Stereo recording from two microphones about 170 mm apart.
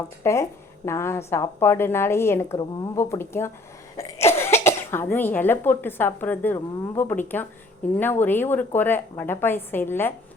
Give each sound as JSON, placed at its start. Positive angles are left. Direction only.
{"t": 0.2, "sound": "a woman's voice", "side_deg": 15}